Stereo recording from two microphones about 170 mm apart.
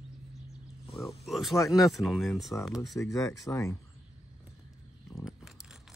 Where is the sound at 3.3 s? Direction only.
20° left (ahead or behind).